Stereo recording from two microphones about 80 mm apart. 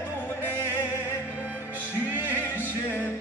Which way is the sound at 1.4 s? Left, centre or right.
Right.